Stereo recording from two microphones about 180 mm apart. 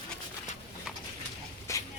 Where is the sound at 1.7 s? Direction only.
15° left (ahead or behind).